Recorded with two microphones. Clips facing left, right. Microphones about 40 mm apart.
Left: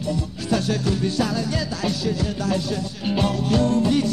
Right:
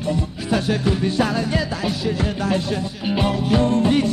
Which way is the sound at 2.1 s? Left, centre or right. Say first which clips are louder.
Right 2 dB; right.